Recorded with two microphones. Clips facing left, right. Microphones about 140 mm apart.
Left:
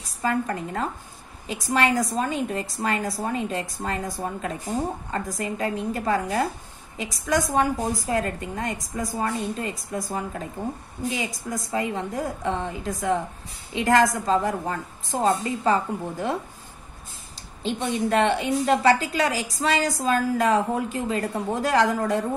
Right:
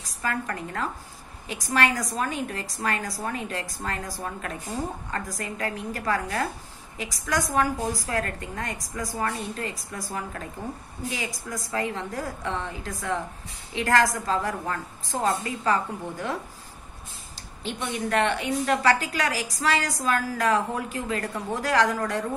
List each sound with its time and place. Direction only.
0.2 s a woman's voice: 25° left (ahead or behind)
17.6 s a woman's voice: 25° left (ahead or behind)